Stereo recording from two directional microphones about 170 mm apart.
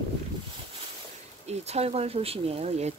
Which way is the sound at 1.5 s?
40° right (ahead or behind).